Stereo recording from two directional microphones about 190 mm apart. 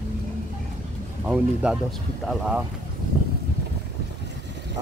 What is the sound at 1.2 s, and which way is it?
Speech, 10° right (ahead or behind).